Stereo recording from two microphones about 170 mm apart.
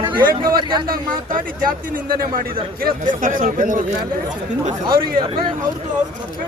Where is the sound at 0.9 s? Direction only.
55° right (ahead or behind).